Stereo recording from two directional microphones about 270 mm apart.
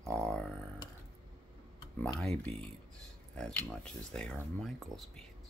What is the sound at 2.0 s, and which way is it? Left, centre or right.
Speech, centre.